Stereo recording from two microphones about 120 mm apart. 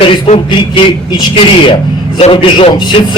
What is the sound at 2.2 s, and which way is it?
Speech, 50° left (ahead or behind).